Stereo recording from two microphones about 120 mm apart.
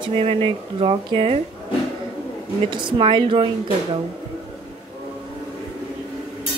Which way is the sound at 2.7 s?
45° right (ahead or behind).